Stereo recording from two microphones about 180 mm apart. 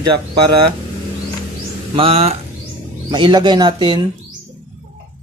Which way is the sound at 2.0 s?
35° right (ahead or behind).